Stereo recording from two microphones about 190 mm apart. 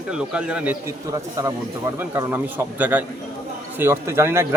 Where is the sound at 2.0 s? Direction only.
10° right (ahead or behind).